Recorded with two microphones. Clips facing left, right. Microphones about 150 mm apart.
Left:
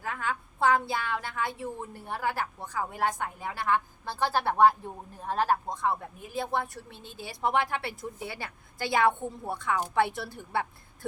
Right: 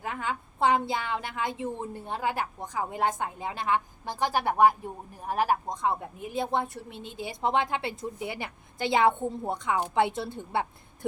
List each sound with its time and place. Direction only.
0.0 s a woman's voice: 20° right (ahead or behind)